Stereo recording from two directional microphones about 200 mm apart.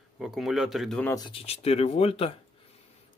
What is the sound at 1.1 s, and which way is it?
Speech, 25° left (ahead or behind).